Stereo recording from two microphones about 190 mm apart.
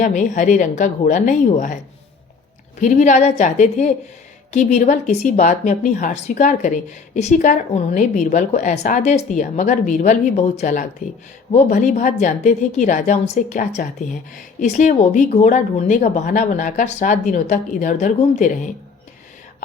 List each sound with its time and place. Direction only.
0.0 s a woman's voice: 40° left (ahead or behind)
2.8 s a woman's voice: 40° left (ahead or behind)